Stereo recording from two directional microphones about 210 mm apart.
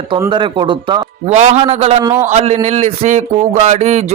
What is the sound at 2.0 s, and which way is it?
Speech, 10° right (ahead or behind).